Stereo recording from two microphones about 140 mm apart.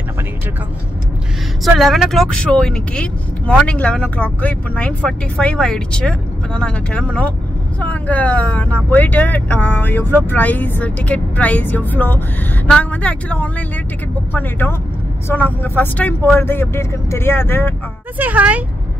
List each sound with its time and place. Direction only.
1.6 s speech: centre (ahead or behind); by 17.7 s 15° left (ahead or behind)
18.1 s speech: 10° right (ahead or behind)